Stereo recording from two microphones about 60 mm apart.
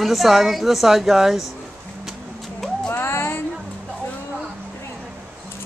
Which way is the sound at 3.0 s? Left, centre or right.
Left.